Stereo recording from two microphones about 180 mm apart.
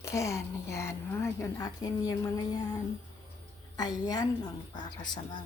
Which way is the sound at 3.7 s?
20° left (ahead or behind).